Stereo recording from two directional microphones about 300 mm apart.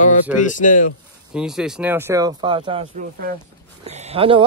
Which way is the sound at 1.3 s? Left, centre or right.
Centre.